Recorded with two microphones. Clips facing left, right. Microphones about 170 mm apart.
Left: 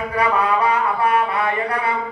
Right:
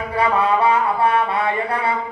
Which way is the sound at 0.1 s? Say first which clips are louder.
Right 2 dB; 25° right (ahead or behind).